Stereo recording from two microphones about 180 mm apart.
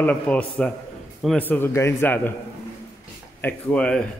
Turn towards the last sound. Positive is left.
turn(degrees=5)  # may be behind; listen again after turning